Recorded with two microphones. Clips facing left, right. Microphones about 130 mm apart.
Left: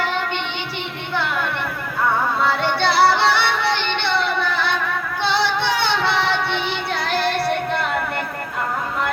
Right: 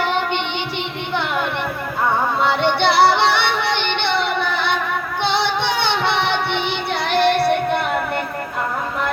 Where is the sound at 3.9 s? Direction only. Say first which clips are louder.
Right 1 dB; 25° right (ahead or behind).